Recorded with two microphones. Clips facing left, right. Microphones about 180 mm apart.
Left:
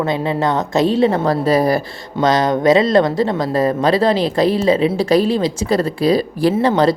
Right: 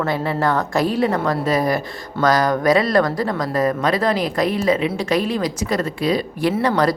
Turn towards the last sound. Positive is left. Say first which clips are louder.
# left 4 dB
turn(degrees=25)  # may be behind; listen again after turning